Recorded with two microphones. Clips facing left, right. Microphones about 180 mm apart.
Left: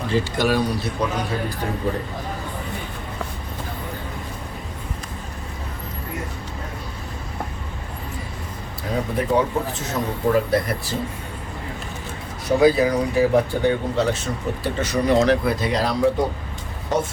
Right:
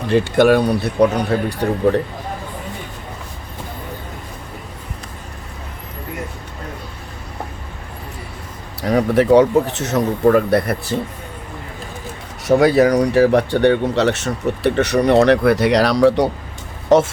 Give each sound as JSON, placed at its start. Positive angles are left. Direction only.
{"t": 0.1, "sound": "a man's voice", "side_deg": -60}
{"t": 8.8, "sound": "speech", "side_deg": -80}
{"t": 12.5, "sound": "speech", "side_deg": -75}